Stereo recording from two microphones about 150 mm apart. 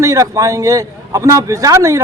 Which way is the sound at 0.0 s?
20° right (ahead or behind).